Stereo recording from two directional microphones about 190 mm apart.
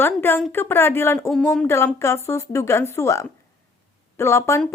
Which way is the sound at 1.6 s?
15° left (ahead or behind).